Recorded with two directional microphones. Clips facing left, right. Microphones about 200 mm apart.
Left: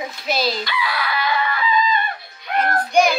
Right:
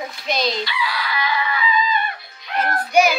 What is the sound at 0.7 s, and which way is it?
Speech, 55° left (ahead or behind).